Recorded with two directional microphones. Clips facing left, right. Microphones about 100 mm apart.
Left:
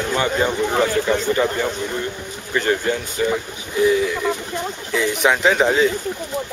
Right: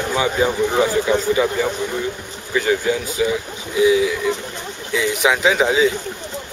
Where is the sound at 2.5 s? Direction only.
5° right (ahead or behind).